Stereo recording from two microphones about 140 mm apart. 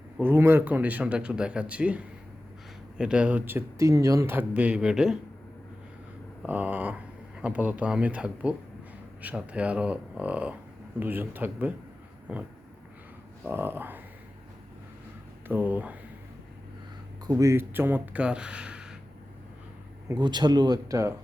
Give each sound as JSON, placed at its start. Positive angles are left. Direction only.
{"t": 0.2, "sound": "speech", "side_deg": -15}
{"t": 3.0, "sound": "speech", "side_deg": -5}
{"t": 6.4, "sound": "speech", "side_deg": -10}
{"t": 15.4, "sound": "speech", "side_deg": -15}
{"t": 17.2, "sound": "speech", "side_deg": -20}
{"t": 20.1, "sound": "speech", "side_deg": -30}